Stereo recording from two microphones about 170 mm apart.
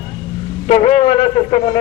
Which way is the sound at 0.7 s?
40° left (ahead or behind).